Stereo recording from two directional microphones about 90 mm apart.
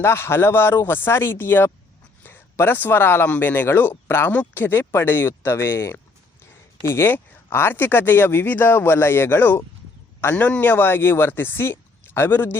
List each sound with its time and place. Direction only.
0.0 s speech: 30° left (ahead or behind)